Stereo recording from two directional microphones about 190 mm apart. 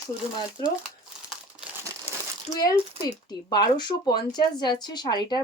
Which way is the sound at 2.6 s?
20° left (ahead or behind).